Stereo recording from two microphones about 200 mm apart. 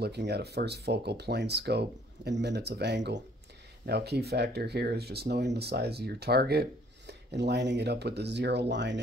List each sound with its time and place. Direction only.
0.0 s speech: 55° right (ahead or behind)